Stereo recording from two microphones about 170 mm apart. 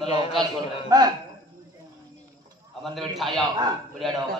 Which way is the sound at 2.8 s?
Centre (ahead or behind).